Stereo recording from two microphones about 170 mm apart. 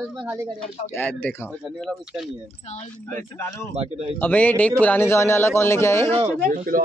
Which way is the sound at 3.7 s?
35° right (ahead or behind).